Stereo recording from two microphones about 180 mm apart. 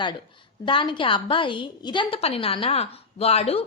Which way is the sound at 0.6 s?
30° left (ahead or behind).